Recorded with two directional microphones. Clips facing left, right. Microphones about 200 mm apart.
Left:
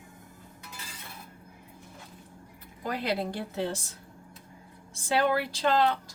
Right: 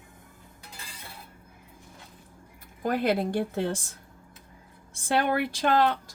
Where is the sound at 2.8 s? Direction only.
50° right (ahead or behind).